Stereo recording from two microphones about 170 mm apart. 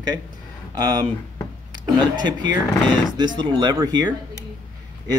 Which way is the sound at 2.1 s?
25° right (ahead or behind).